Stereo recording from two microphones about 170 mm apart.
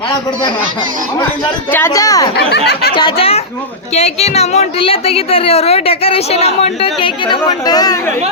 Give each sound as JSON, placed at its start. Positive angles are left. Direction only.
{"t": 1.7, "sound": "a woman's voice", "side_deg": 15}